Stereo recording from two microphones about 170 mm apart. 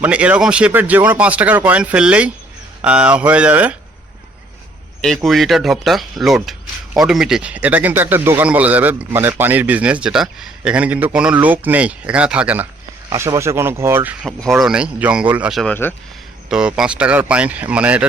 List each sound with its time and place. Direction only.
0.0 s speech: 10° right (ahead or behind)
4.9 s speech: 5° left (ahead or behind)
14.3 s speech: centre (ahead or behind)
15.7 s speech: 10° left (ahead or behind)
16.5 s speech: 5° right (ahead or behind)